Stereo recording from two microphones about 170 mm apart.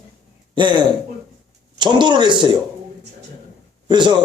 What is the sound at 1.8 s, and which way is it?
Speech, 25° right (ahead or behind).